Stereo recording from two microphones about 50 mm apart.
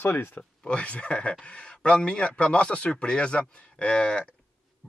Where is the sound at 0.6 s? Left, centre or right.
Left.